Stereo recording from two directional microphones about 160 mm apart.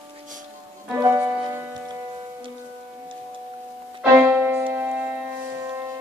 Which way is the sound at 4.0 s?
15° right (ahead or behind).